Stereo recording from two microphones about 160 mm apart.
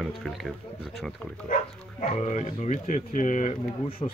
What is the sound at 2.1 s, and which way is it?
Speech, 45° left (ahead or behind).